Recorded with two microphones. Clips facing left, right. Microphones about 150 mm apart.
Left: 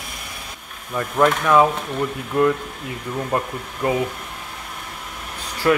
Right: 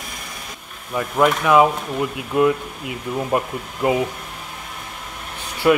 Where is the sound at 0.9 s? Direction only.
5° right (ahead or behind).